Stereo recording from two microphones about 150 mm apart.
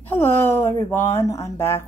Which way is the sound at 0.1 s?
15° left (ahead or behind).